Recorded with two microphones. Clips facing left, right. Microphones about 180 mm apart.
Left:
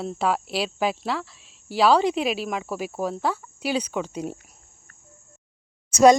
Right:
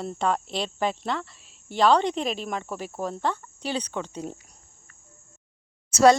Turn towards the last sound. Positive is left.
turn(degrees=15)  # may be behind; listen again after turning